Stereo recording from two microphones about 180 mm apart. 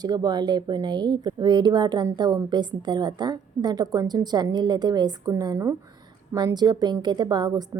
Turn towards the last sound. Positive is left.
turn(degrees=-20)  # may be behind; listen again after turning